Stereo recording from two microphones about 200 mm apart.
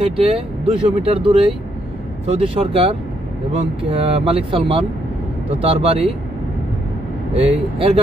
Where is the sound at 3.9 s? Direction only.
30° right (ahead or behind).